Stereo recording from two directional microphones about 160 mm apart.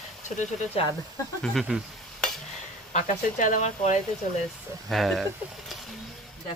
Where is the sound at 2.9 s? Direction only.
55° left (ahead or behind).